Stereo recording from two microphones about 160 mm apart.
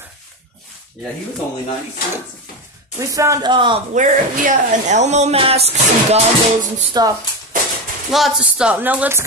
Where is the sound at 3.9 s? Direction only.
50° right (ahead or behind).